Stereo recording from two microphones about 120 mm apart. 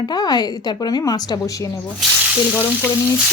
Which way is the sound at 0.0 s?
35° left (ahead or behind).